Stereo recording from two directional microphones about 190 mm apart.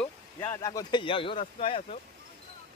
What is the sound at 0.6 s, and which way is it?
Speech, 20° left (ahead or behind).